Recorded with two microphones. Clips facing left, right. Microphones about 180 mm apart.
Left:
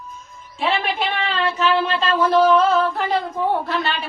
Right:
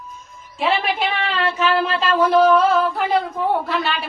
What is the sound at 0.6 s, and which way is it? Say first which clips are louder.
A woman's voice: right 2 dB; 10° right (ahead or behind).